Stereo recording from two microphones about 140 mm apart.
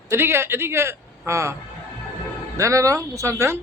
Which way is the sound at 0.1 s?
15° right (ahead or behind).